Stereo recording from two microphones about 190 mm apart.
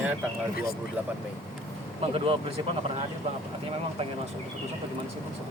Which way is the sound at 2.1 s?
30° right (ahead or behind).